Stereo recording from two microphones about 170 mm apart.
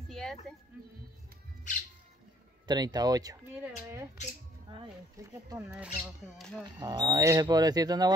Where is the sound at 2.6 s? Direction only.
25° right (ahead or behind).